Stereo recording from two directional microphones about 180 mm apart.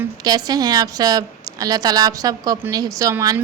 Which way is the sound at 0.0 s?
20° right (ahead or behind).